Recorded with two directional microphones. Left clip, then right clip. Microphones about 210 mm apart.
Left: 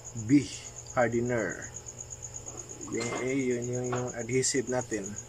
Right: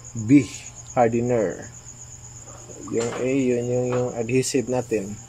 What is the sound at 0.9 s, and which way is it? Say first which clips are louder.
Speech: right 8 dB; 15° right (ahead or behind).